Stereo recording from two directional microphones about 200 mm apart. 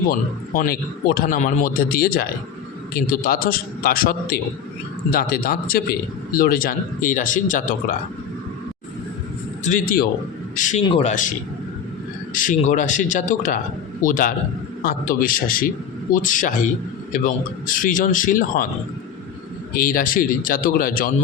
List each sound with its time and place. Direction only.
0.1 s a man's voice: 45° left (ahead or behind)
9.6 s a man's voice: 40° left (ahead or behind)
10.8 s speech: 25° left (ahead or behind)
12.3 s a man's voice: 40° left (ahead or behind)
19.7 s a man's voice: 45° left (ahead or behind)